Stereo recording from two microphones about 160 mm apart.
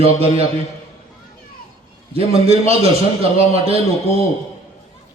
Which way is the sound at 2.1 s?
40° right (ahead or behind).